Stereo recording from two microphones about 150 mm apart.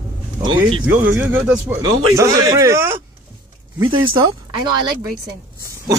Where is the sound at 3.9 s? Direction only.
35° right (ahead or behind).